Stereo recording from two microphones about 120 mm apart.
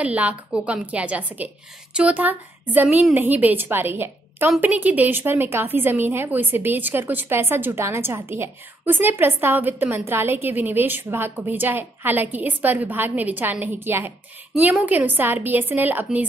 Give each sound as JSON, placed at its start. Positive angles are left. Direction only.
{"t": 0.0, "sound": "a woman's voice", "side_deg": -10}